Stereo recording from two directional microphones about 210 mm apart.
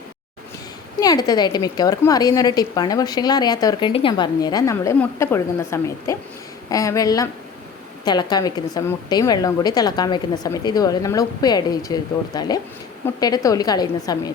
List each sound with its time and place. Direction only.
0.9 s a woman's voice: 20° left (ahead or behind)